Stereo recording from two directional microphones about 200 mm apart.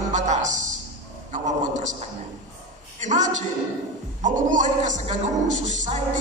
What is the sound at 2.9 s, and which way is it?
A woman's voice, 35° right (ahead or behind).